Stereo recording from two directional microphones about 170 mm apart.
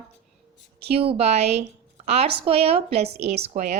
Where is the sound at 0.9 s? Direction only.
35° right (ahead or behind).